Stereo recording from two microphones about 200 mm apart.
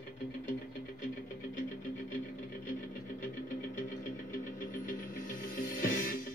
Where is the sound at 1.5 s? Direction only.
45° left (ahead or behind).